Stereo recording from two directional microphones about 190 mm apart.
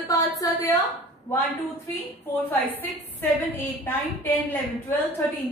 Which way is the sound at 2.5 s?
10° left (ahead or behind).